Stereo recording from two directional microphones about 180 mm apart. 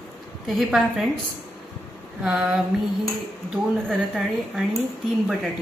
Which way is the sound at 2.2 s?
5° right (ahead or behind).